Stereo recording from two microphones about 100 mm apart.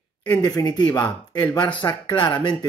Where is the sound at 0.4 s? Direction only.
40° left (ahead or behind).